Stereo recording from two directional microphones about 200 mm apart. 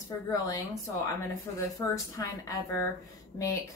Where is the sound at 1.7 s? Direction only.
15° left (ahead or behind).